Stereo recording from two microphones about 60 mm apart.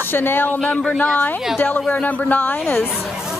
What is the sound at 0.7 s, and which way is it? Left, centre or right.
Speech, centre.